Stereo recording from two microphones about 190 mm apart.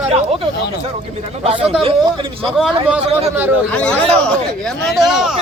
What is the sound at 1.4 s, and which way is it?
Speech, 30° right (ahead or behind).